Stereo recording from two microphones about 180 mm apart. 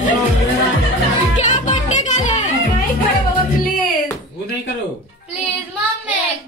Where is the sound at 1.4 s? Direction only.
40° left (ahead or behind).